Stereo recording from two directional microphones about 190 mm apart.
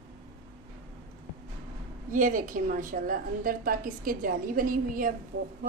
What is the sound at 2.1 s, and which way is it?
A woman's voice, 45° right (ahead or behind).